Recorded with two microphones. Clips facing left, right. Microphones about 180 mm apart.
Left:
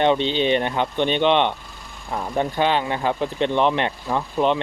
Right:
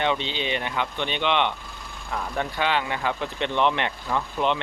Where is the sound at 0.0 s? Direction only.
40° left (ahead or behind).